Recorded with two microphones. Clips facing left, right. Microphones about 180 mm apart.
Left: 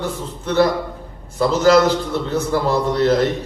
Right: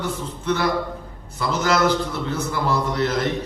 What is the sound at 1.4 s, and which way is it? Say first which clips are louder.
A man's voice: left 7 dB; 35° left (ahead or behind).